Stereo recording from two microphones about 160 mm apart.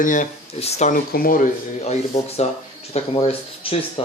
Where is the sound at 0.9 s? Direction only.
65° left (ahead or behind).